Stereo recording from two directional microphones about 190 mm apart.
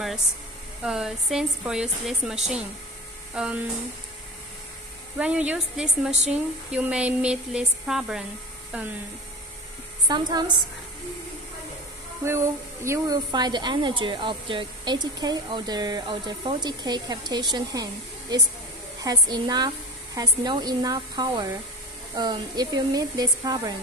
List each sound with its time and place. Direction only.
0.8 s speech: 5° right (ahead or behind)
3.3 s speech: 5° right (ahead or behind)
5.1 s a woman's voice: 5° right (ahead or behind)
10.0 s speech: 20° right (ahead or behind)
12.3 s speech: 15° right (ahead or behind)